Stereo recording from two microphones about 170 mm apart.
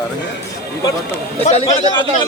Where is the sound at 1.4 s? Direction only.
40° left (ahead or behind).